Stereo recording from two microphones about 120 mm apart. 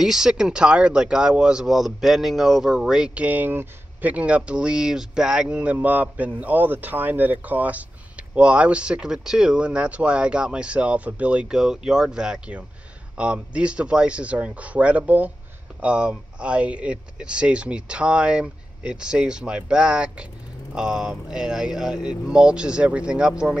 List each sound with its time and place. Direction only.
0.0 s a man's voice: 5° right (ahead or behind)